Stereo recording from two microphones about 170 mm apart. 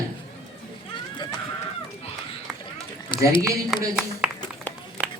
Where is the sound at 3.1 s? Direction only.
30° left (ahead or behind).